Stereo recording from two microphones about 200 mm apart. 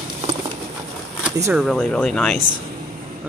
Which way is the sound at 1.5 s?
Centre (ahead or behind).